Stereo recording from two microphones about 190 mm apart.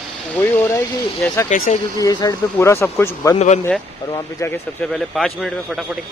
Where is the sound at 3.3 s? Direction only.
35° left (ahead or behind).